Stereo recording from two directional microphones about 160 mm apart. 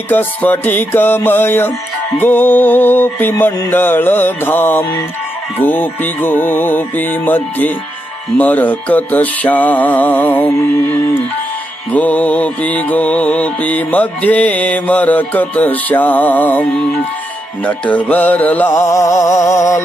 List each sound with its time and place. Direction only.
0.1 s music: 10° left (ahead or behind)